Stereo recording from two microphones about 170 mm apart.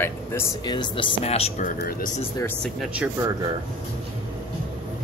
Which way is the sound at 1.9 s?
55° left (ahead or behind).